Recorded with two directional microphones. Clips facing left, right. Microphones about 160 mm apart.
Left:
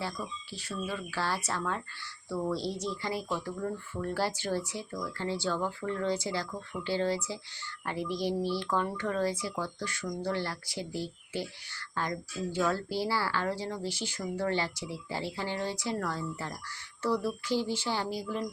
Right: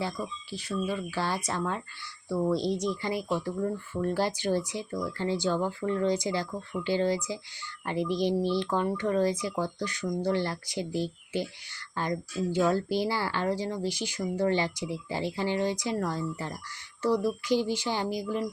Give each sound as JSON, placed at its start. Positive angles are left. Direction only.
{"t": 0.0, "sound": "speech", "side_deg": -15}